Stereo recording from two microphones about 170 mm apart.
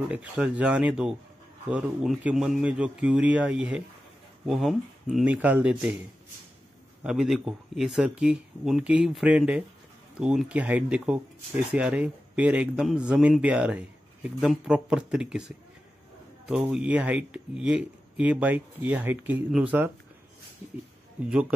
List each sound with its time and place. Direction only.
0.1 s speech: 10° right (ahead or behind)
7.0 s speech: 5° right (ahead or behind)
21.3 s speech: 5° right (ahead or behind)